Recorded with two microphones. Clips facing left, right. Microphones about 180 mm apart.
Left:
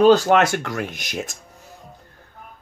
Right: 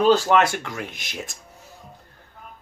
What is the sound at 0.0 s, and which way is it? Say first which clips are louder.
Speech: left 3 dB; 40° left (ahead or behind).